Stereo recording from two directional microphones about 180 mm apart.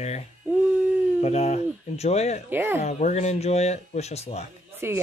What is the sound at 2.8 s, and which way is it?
Speech, 40° left (ahead or behind).